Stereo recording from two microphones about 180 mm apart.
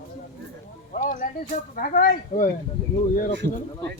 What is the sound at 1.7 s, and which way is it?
Speech, 50° left (ahead or behind).